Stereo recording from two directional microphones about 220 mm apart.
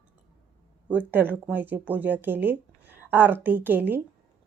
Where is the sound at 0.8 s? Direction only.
10° right (ahead or behind).